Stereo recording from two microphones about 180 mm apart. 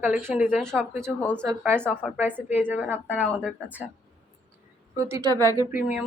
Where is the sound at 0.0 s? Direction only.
10° right (ahead or behind).